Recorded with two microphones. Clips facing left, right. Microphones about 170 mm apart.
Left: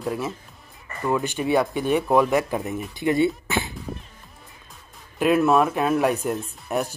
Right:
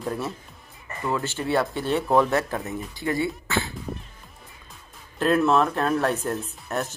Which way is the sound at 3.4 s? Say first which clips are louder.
Left 1 dB; 20° left (ahead or behind).